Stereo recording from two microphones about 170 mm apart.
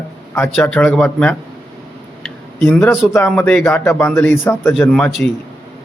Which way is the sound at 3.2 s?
5° left (ahead or behind).